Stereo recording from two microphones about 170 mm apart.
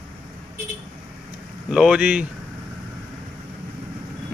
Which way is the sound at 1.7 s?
5° right (ahead or behind).